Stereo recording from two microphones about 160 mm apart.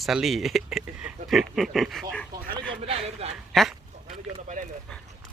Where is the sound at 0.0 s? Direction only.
Centre (ahead or behind).